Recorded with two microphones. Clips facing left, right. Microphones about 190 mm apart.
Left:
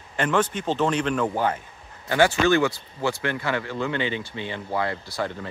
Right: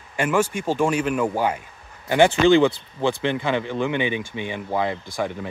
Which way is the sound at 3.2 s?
20° right (ahead or behind).